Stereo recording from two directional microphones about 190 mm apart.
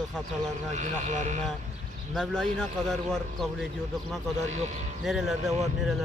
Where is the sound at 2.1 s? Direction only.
5° left (ahead or behind).